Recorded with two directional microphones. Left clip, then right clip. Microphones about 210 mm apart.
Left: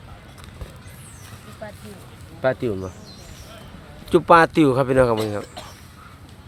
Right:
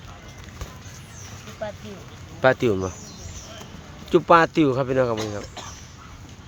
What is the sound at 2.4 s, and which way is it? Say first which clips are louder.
Speech: right 3 dB; 10° right (ahead or behind).